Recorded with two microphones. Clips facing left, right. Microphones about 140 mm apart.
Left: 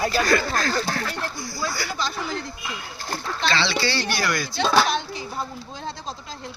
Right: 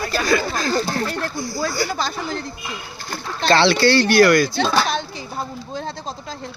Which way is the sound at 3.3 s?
50° right (ahead or behind).